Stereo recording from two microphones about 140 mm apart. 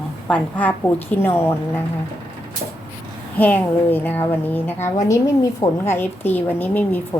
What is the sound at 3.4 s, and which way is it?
A woman's voice, 10° left (ahead or behind).